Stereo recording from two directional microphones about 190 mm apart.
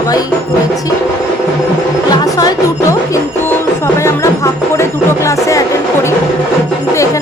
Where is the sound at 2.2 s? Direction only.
20° left (ahead or behind).